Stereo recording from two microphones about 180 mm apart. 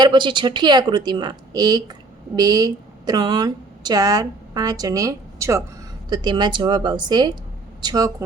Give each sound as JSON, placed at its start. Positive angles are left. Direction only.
{"t": 0.0, "sound": "a woman's voice", "side_deg": -25}